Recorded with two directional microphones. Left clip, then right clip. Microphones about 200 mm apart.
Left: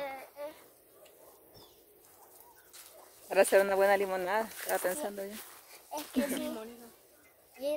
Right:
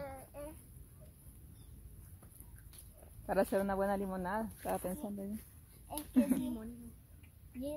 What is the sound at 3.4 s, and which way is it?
Speech, centre (ahead or behind).